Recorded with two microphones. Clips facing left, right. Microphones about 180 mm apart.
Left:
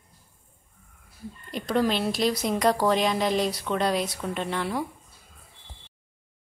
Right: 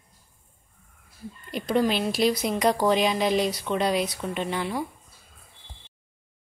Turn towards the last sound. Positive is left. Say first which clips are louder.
# even
turn(degrees=-5)  # may be behind; listen again after turning